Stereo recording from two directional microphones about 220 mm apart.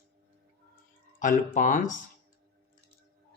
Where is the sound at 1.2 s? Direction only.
35° left (ahead or behind).